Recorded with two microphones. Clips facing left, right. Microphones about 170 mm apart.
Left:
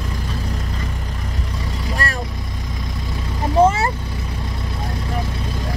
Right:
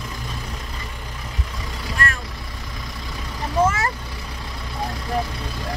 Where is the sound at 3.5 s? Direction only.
30° left (ahead or behind).